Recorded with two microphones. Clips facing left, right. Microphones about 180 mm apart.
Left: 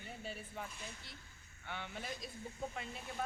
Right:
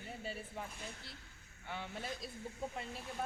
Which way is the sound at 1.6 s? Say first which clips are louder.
Right 2 dB; centre (ahead or behind).